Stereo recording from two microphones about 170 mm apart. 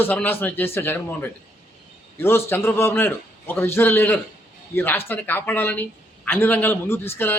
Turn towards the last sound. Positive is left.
turn(degrees=15)  # may be behind; listen again after turning